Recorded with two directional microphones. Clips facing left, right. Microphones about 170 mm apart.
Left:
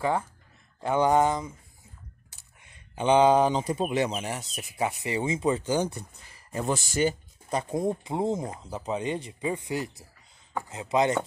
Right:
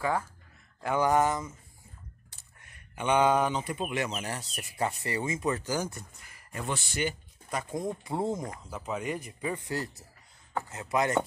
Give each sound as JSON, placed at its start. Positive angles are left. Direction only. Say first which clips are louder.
{"t": 0.7, "sound": "speech", "louder": "left 3 dB", "side_deg": 25}
{"t": 3.0, "sound": "speech", "louder": "left 5 dB", "side_deg": 30}
{"t": 4.1, "sound": "speech", "louder": "left 3 dB", "side_deg": 15}
{"t": 6.7, "sound": "speech", "louder": "left 6 dB", "side_deg": 40}